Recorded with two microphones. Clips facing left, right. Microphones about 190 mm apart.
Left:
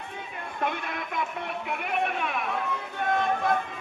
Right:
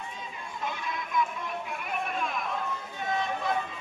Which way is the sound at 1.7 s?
65° left (ahead or behind).